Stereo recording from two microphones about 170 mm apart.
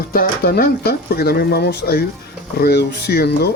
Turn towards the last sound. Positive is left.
turn(degrees=70)  # may be behind; listen again after turning